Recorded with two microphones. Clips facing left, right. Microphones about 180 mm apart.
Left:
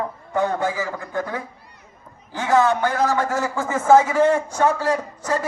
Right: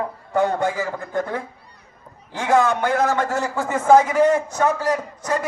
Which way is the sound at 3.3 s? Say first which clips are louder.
Even; 20° right (ahead or behind).